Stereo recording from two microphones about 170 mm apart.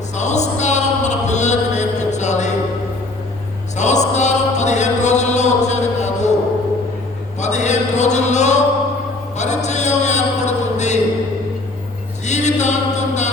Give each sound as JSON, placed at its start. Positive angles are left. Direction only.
{"t": 0.2, "sound": "music", "side_deg": 45}
{"t": 3.8, "sound": "music", "side_deg": 45}
{"t": 7.3, "sound": "a sound", "side_deg": 45}
{"t": 9.6, "sound": "music", "side_deg": 45}
{"t": 12.2, "sound": "music", "side_deg": 45}